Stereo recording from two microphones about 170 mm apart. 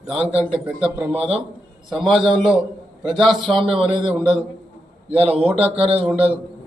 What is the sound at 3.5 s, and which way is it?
Speech, 30° right (ahead or behind).